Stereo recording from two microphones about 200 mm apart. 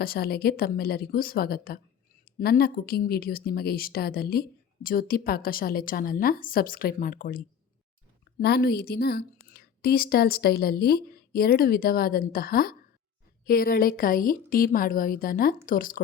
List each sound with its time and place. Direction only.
0.0 s speech: 50° left (ahead or behind)